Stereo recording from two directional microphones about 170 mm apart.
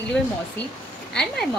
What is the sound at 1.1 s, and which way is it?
Speech, 5° left (ahead or behind).